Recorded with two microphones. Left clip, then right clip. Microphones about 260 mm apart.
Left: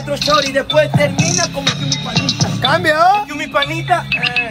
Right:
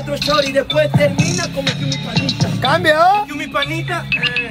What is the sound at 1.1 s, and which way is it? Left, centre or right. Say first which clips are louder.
Music: left 3 dB; centre.